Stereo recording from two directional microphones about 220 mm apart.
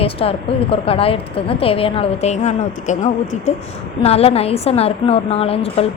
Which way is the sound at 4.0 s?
25° left (ahead or behind).